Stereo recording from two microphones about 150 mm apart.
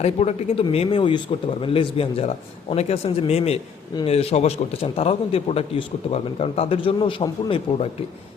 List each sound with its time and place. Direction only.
0.0 s speech: 45° left (ahead or behind)